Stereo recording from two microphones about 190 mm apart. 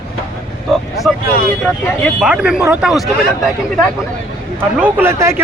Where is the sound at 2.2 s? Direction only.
5° right (ahead or behind).